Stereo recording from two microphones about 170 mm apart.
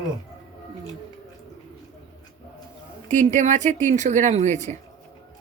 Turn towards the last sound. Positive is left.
turn(degrees=-45)  # may be behind; listen again after turning